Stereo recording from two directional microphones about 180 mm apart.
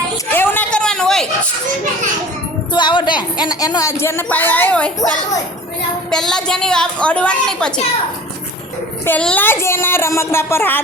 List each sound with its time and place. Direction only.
0.3 s a sound: 10° left (ahead or behind)
2.7 s a woman's voice: 25° left (ahead or behind); by 4.9 s 10° left (ahead or behind)
6.1 s a woman's voice: 5° left (ahead or behind)
9.0 s speech: 10° left (ahead or behind)